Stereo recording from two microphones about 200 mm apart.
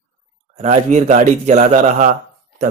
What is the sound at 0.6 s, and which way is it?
Speech, 35° right (ahead or behind).